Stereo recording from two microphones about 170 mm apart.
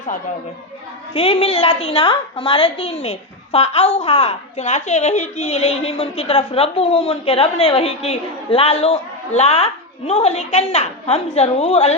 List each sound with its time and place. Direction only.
1.1 s a woman's voice: 35° left (ahead or behind)